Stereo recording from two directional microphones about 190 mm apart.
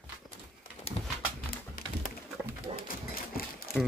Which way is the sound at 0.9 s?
30° left (ahead or behind).